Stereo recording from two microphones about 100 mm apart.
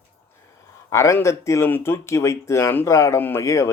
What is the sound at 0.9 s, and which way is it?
Speech, 30° left (ahead or behind).